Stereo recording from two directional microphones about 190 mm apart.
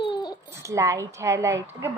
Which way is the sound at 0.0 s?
20° left (ahead or behind).